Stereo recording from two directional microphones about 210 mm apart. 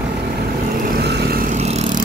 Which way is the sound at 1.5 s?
30° right (ahead or behind).